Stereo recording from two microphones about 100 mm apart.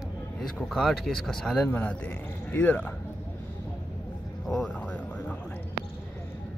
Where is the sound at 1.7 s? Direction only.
15° left (ahead or behind).